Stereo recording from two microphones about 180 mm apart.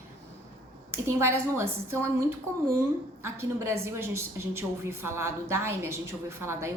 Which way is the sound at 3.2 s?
15° right (ahead or behind).